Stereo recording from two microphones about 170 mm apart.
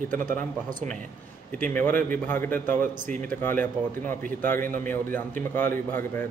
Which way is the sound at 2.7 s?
50° right (ahead or behind).